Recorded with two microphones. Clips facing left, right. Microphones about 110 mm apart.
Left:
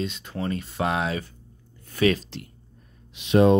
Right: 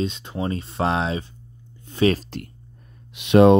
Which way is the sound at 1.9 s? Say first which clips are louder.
Right 2 dB; 25° right (ahead or behind).